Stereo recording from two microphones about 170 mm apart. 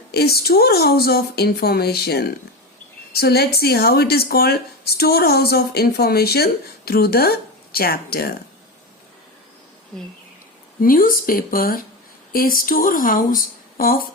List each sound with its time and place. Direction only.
0.1 s speech: 70° left (ahead or behind)
10.8 s speech: 55° left (ahead or behind)